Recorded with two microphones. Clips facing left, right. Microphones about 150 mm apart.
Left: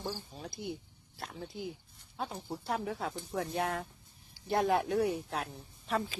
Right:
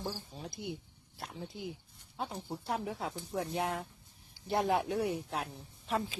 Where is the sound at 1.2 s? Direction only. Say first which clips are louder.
Left 1 dB; 10° right (ahead or behind).